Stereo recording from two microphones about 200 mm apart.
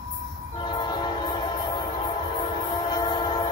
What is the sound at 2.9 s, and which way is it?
Train, 20° left (ahead or behind).